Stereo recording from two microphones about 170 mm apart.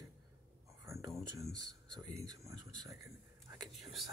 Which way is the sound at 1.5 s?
20° right (ahead or behind).